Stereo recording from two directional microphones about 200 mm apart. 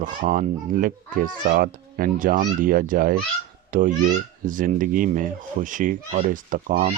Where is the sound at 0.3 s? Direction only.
40° right (ahead or behind).